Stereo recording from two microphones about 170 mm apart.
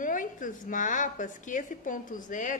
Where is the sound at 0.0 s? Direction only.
50° left (ahead or behind).